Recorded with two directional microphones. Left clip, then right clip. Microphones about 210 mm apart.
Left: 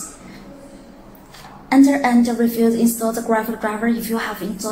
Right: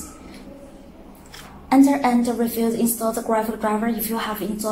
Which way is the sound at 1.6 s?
15° right (ahead or behind).